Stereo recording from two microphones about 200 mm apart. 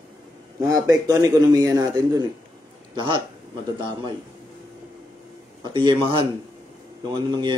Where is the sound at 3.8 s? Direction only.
20° right (ahead or behind).